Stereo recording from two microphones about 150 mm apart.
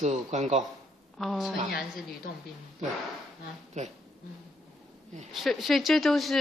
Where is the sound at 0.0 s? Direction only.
50° right (ahead or behind).